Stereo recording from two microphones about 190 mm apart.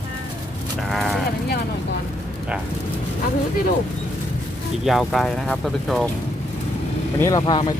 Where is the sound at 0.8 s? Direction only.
Centre (ahead or behind).